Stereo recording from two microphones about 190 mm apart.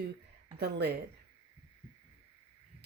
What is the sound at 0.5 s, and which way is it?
Speech, 60° right (ahead or behind).